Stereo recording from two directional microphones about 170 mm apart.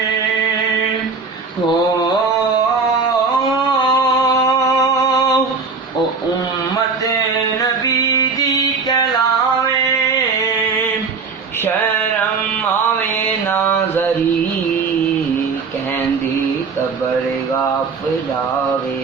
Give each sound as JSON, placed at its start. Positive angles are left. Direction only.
{"t": 4.4, "sound": "a sound", "side_deg": 25}
{"t": 7.6, "sound": "music", "side_deg": 20}
{"t": 13.5, "sound": "mantra", "side_deg": 10}